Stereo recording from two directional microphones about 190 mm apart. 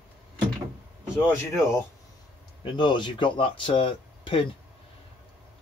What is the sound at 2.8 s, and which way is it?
Speech, 25° left (ahead or behind).